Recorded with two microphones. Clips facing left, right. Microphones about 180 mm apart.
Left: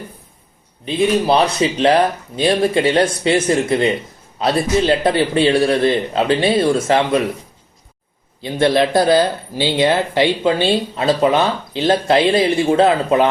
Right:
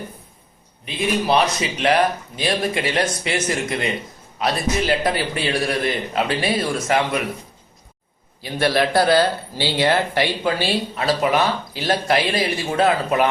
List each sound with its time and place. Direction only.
0.9 s speech: 30° left (ahead or behind)
8.4 s speech: 25° left (ahead or behind)